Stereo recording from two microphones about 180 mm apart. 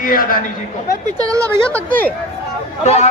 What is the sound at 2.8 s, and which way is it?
Speech, 35° left (ahead or behind).